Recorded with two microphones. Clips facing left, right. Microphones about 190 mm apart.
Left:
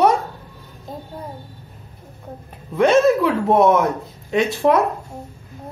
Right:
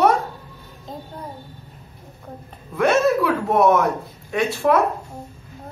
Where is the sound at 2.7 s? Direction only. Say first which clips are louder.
Left 3 dB; 20° left (ahead or behind).